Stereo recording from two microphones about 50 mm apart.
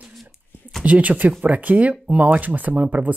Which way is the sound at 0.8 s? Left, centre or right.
Right.